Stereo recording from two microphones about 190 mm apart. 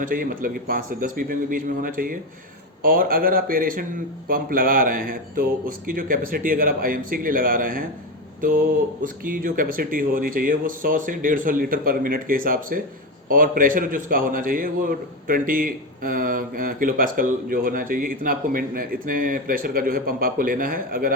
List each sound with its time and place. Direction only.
0.0 s a man's voice: 45° right (ahead or behind)
9.0 s a man's voice: 45° right (ahead or behind)